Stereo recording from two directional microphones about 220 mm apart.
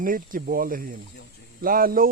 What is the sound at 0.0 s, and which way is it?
Speech, 40° right (ahead or behind).